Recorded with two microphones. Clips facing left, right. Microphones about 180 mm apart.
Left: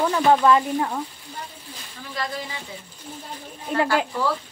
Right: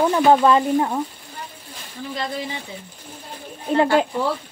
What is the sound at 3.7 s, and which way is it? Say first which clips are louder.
Speech: right 5 dB; 25° right (ahead or behind).